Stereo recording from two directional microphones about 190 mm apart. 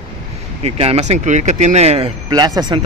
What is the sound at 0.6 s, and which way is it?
Speech, 35° right (ahead or behind).